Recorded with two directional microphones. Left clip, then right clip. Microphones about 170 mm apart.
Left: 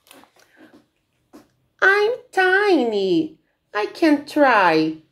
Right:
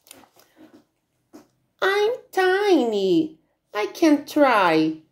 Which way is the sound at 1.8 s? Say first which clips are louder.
Left 4 dB; centre (ahead or behind).